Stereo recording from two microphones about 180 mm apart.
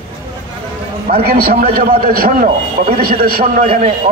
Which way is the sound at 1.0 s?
55° right (ahead or behind).